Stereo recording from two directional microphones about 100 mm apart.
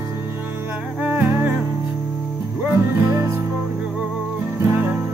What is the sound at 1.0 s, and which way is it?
Music, 20° right (ahead or behind).